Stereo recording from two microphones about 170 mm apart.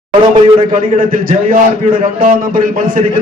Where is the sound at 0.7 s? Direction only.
50° right (ahead or behind).